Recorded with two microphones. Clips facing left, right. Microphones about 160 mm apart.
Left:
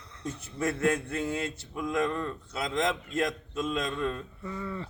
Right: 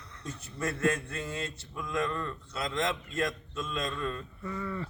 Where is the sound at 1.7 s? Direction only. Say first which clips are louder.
Left 3 dB; 20° left (ahead or behind).